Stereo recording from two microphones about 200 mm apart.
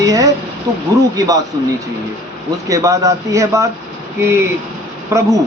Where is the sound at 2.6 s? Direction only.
15° right (ahead or behind).